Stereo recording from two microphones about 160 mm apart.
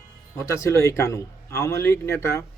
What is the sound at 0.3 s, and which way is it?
Speech, 20° left (ahead or behind).